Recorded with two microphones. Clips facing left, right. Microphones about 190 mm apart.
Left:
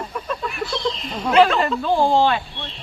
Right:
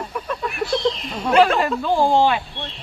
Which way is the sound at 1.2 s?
Centre (ahead or behind).